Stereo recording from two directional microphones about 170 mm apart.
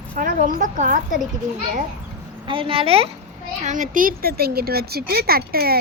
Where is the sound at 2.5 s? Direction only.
30° right (ahead or behind).